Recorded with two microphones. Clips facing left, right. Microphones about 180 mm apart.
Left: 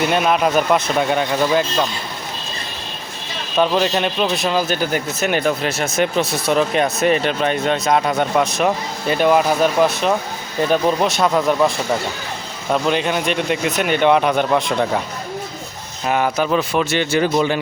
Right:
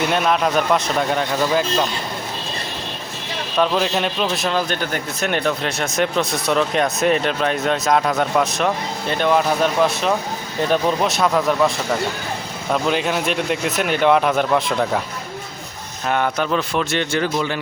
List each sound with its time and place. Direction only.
0.1 s speech: 5° left (ahead or behind)
3.6 s speech: centre (ahead or behind)
12.7 s speech: centre (ahead or behind)
16.0 s speech: 5° left (ahead or behind)
17.3 s speech: 20° left (ahead or behind)